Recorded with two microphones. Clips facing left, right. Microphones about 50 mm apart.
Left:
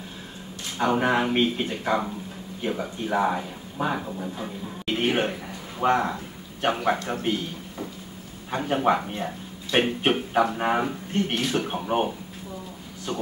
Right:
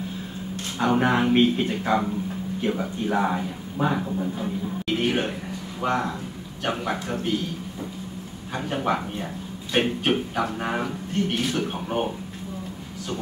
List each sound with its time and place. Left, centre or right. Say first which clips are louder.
0.7 s speech: right 1 dB; centre
5.0 s a man's voice: left 3 dB; left
8.6 s speech: left 3 dB; centre